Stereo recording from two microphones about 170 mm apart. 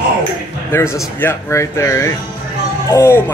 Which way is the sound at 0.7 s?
15° left (ahead or behind).